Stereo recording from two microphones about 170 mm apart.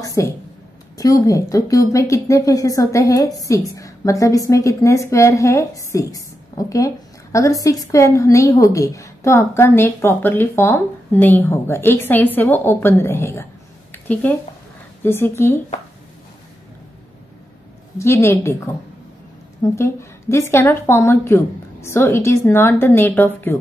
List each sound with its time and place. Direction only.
0.0 s a sound: 20° left (ahead or behind)
0.9 s a woman's voice: 20° left (ahead or behind)
13.9 s a sound: 10° left (ahead or behind)
15.0 s a woman's voice: 15° left (ahead or behind)
17.9 s a woman's voice: 15° left (ahead or behind)
19.7 s a woman's voice: 15° left (ahead or behind)